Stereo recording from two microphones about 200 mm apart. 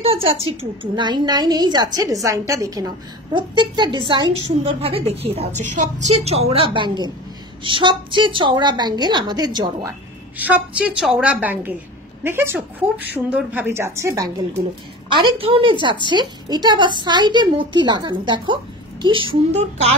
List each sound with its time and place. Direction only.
0.0 s a woman's voice: 30° right (ahead or behind)
10.3 s a woman's voice: 10° right (ahead or behind); by 20.0 s 30° right (ahead or behind)